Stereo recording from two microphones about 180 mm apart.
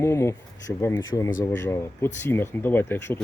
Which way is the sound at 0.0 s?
15° left (ahead or behind).